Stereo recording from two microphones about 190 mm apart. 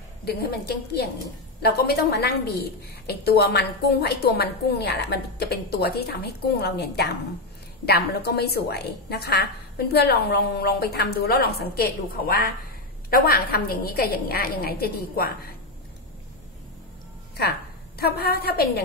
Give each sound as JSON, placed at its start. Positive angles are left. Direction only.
{"t": 0.2, "sound": "a woman's voice", "side_deg": 55}
{"t": 17.4, "sound": "a woman's voice", "side_deg": 55}